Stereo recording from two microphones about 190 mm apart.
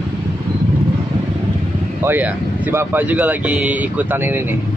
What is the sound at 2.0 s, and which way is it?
Speech, 10° right (ahead or behind).